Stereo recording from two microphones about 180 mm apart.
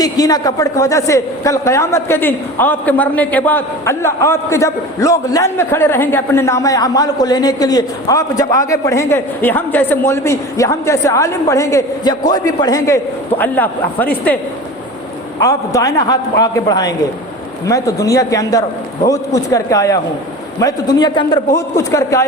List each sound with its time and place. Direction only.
0.0 s a man's voice: 20° left (ahead or behind)
15.4 s a man's voice: 20° left (ahead or behind)